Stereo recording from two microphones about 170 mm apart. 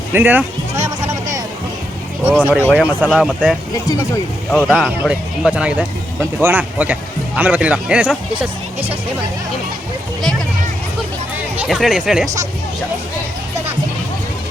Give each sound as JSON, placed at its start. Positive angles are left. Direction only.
{"t": 0.1, "sound": "speech", "side_deg": -10}
{"t": 2.4, "sound": "speech", "side_deg": -10}
{"t": 3.8, "sound": "speech", "side_deg": 20}
{"t": 4.5, "sound": "speech", "side_deg": -5}
{"t": 11.5, "sound": "speech", "side_deg": -5}